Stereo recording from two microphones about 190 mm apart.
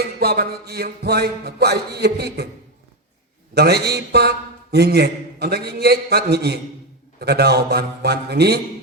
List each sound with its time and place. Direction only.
0.2 s a man's voice: 55° right (ahead or behind)
3.5 s a man's voice: 60° right (ahead or behind)